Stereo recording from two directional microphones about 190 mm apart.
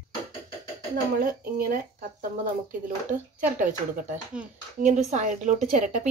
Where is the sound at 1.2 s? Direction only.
45° right (ahead or behind).